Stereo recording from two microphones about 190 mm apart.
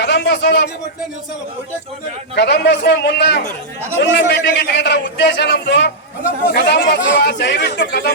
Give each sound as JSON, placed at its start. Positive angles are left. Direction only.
{"t": 0.0, "sound": "speech", "side_deg": 60}
{"t": 2.3, "sound": "a man's voice", "side_deg": 65}